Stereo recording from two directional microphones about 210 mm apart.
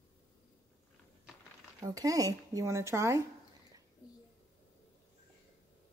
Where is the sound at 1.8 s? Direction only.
15° right (ahead or behind).